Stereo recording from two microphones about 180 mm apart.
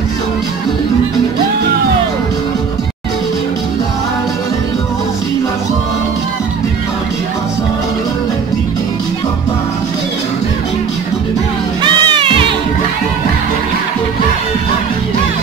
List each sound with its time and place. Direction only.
11.8 s music: 30° right (ahead or behind)